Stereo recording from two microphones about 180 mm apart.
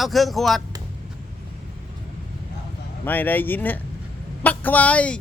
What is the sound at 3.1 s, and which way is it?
Speech, 10° left (ahead or behind).